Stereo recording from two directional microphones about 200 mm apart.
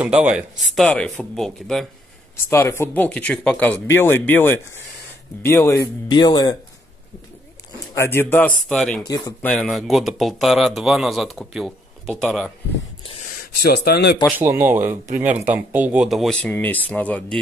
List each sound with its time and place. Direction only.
0.0 s speech: 5° right (ahead or behind)
2.3 s speech: 10° left (ahead or behind)
7.9 s speech: 10° left (ahead or behind)
9.0 s speech: 20° left (ahead or behind)
9.5 s speech: centre (ahead or behind)
13.0 s a sound: 30° left (ahead or behind)
13.4 s speech: 55° left (ahead or behind)
14.4 s speech: 10° right (ahead or behind); by 17.4 s 5° left (ahead or behind)